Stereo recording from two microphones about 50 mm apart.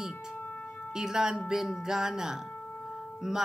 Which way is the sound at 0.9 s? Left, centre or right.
Centre.